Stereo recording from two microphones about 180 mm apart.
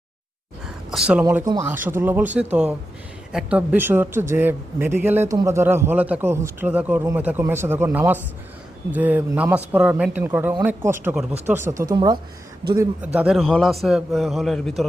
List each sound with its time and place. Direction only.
0.9 s a man's voice: 5° right (ahead or behind); by 12.2 s 25° right (ahead or behind)
13.1 s a man's voice: centre (ahead or behind)